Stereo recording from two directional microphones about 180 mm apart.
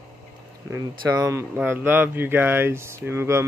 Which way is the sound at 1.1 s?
20° right (ahead or behind).